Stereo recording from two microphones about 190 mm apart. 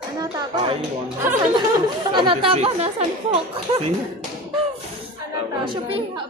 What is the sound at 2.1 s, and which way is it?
Speech, 25° right (ahead or behind).